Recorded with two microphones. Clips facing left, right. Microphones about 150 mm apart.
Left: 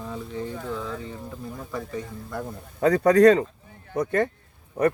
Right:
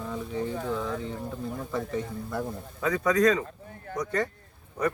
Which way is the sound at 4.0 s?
55° left (ahead or behind).